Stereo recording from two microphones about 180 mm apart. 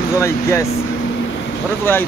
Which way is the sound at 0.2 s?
15° left (ahead or behind).